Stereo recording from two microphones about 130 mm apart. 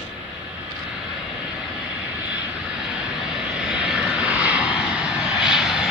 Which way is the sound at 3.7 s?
10° right (ahead or behind).